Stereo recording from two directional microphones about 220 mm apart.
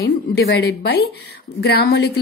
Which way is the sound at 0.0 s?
50° left (ahead or behind).